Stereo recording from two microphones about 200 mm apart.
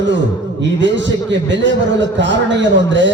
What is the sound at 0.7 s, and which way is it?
A man's voice, 65° right (ahead or behind).